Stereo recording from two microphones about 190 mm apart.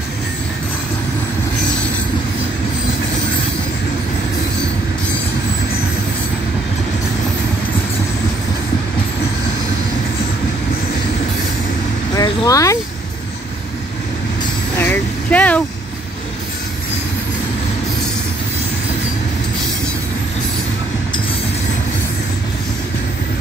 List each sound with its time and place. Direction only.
12.2 s vehicle: 15° left (ahead or behind)
14.8 s vehicle: 10° left (ahead or behind)